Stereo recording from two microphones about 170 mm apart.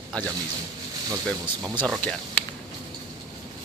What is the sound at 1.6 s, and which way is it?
Speech, 25° right (ahead or behind).